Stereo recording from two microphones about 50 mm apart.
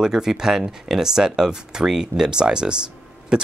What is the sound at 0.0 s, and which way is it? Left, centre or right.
Speech, centre.